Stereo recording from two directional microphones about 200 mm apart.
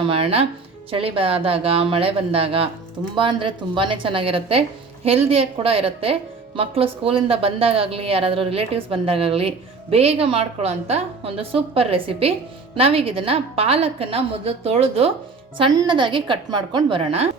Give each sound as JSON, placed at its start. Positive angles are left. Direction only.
{"t": 0.1, "sound": "a woman's voice", "side_deg": -30}